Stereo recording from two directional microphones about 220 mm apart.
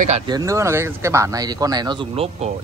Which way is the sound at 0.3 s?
15° right (ahead or behind).